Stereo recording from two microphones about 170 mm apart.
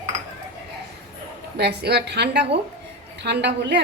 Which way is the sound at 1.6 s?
75° right (ahead or behind).